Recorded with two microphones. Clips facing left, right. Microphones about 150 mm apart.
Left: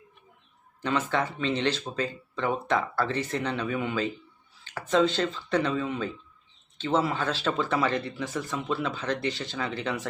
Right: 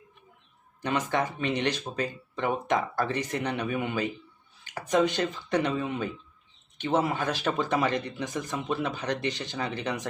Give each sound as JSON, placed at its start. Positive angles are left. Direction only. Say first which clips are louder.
{"t": 0.8, "sound": "speech", "louder": "even", "side_deg": -15}